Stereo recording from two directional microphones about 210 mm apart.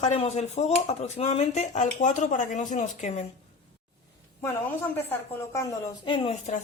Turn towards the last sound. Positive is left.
turn(degrees=30)  # may be behind; listen again after turning